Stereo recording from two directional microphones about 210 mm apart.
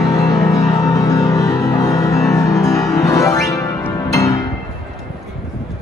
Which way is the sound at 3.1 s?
15° left (ahead or behind).